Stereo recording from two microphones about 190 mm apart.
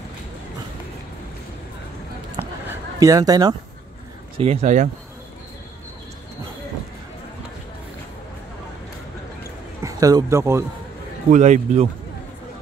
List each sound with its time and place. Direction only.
2.7 s speech: 20° right (ahead or behind)
4.4 s a man's voice: 35° right (ahead or behind)
9.8 s speech: 20° right (ahead or behind)
11.2 s a man's voice: 40° right (ahead or behind)